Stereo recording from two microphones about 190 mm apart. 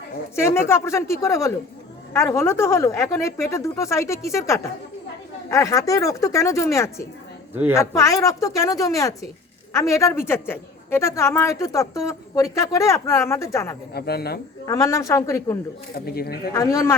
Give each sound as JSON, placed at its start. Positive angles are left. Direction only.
{"t": 0.3, "sound": "a woman's voice", "side_deg": 15}
{"t": 13.9, "sound": "speech", "side_deg": 55}
{"t": 14.7, "sound": "a woman's voice", "side_deg": 15}
{"t": 16.0, "sound": "speech", "side_deg": 55}
{"t": 16.5, "sound": "a woman's voice", "side_deg": 15}